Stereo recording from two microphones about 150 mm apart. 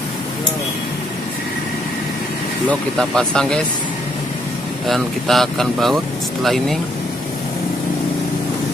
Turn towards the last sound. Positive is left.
turn(degrees=0)  # may be behind; listen again after turning